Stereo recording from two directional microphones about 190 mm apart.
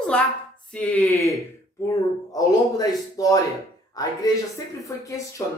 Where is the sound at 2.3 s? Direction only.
20° left (ahead or behind).